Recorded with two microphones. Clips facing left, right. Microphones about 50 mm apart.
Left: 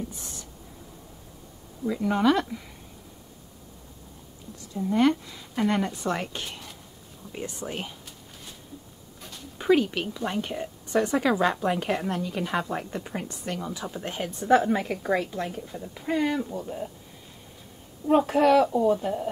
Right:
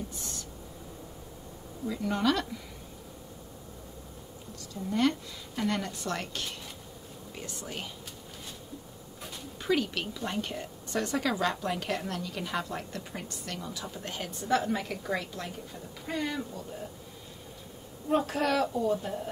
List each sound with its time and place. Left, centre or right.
1.9 s a woman's voice: centre
4.7 s a woman's voice: centre
9.6 s a woman's voice: centre
18.0 s a woman's voice: centre